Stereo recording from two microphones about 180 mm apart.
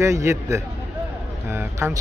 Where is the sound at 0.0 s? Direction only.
15° right (ahead or behind).